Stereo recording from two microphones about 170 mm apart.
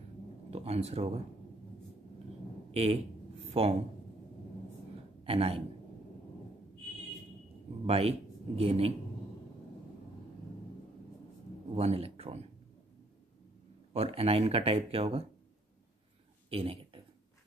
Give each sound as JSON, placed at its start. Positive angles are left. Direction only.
{"t": 0.5, "sound": "speech", "side_deg": -35}
{"t": 2.7, "sound": "speech", "side_deg": -35}
{"t": 5.2, "sound": "a man's voice", "side_deg": -35}
{"t": 7.8, "sound": "speech", "side_deg": -35}
{"t": 11.7, "sound": "speech", "side_deg": -35}
{"t": 13.9, "sound": "speech", "side_deg": -35}
{"t": 16.4, "sound": "a sound", "side_deg": -35}